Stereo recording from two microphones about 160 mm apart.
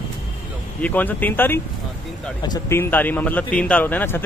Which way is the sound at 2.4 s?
25° left (ahead or behind).